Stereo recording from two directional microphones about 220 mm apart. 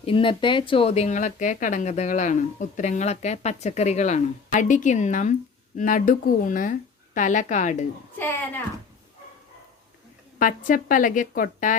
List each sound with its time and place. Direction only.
0.0 s speech: 25° left (ahead or behind)
8.2 s a child's voice: 10° left (ahead or behind)
10.3 s speech: 35° left (ahead or behind)